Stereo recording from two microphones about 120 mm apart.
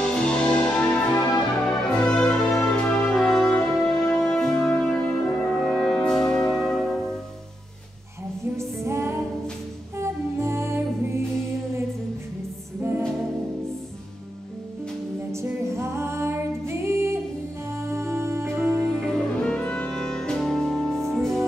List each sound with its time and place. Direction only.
0.0 s music: 5° left (ahead or behind)
2.9 s brass instrument: 10° left (ahead or behind)
8.8 s music: 20° right (ahead or behind)
15.3 s music: 25° right (ahead or behind)
19.0 s music: 5° left (ahead or behind)